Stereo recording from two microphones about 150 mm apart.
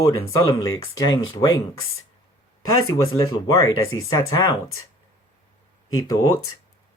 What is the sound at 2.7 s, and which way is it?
Speech, 25° left (ahead or behind).